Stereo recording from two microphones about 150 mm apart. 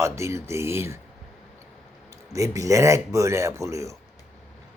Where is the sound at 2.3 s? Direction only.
20° right (ahead or behind).